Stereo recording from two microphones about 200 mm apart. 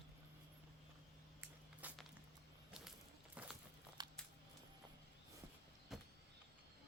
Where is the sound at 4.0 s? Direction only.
20° right (ahead or behind).